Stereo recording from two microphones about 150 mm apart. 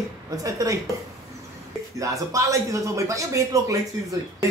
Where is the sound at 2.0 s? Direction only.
20° right (ahead or behind).